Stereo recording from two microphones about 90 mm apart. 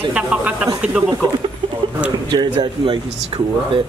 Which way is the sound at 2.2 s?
50° right (ahead or behind).